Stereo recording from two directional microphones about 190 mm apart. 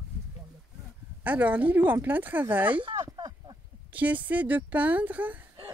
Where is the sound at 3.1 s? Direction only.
20° right (ahead or behind).